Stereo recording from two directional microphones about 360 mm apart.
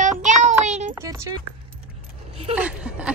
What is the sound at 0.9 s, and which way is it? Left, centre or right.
Speech, centre.